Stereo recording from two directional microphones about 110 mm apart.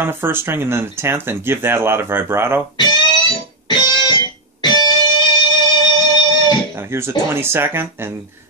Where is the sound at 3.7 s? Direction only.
40° left (ahead or behind).